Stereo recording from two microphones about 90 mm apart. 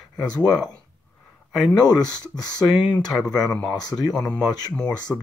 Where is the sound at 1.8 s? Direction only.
45° left (ahead or behind).